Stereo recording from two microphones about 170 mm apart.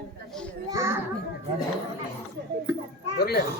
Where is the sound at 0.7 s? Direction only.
20° right (ahead or behind).